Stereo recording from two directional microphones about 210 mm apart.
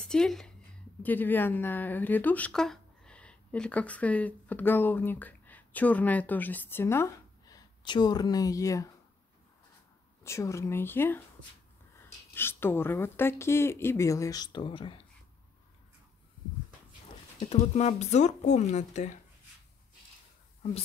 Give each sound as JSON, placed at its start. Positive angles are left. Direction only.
{"t": 0.0, "sound": "a woman's voice", "side_deg": 5}
{"t": 10.2, "sound": "speech", "side_deg": 15}
{"t": 12.4, "sound": "speech", "side_deg": 10}
{"t": 17.4, "sound": "speech", "side_deg": 30}